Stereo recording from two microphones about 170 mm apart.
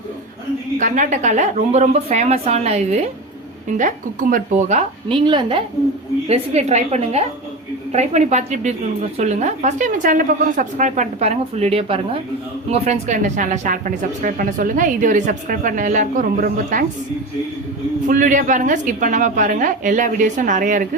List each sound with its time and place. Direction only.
0.8 s a woman's voice: 50° right (ahead or behind)
18.1 s a woman's voice: 50° right (ahead or behind)